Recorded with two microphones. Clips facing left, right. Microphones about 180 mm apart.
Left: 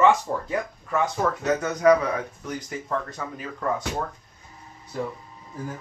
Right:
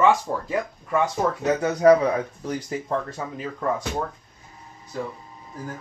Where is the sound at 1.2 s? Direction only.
20° right (ahead or behind).